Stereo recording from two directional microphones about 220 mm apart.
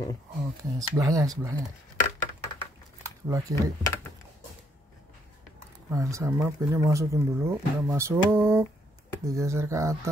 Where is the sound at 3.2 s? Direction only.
15° right (ahead or behind).